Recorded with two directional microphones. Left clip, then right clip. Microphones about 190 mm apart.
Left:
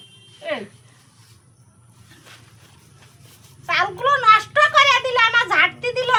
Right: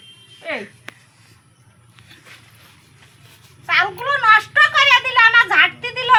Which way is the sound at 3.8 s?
40° left (ahead or behind).